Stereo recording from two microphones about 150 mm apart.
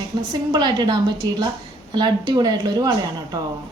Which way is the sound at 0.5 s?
30° right (ahead or behind).